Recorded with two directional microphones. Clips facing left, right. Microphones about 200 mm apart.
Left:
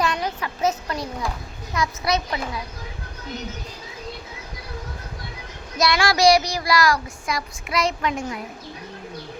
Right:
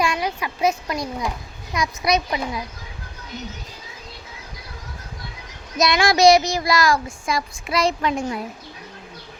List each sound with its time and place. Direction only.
0.0 s a child's voice: 10° right (ahead or behind)
5.7 s speech: 20° right (ahead or behind)